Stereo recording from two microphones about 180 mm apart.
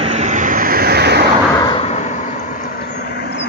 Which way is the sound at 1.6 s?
25° left (ahead or behind).